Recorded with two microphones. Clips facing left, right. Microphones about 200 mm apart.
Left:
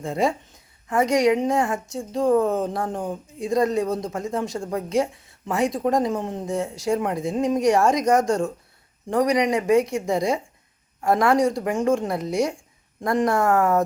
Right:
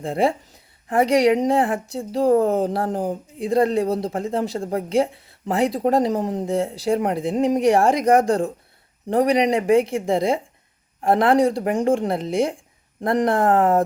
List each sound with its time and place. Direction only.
0.0 s speech: 30° right (ahead or behind)